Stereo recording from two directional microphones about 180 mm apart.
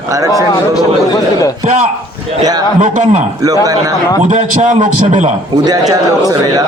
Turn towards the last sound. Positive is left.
turn(degrees=-20)  # may be behind; listen again after turning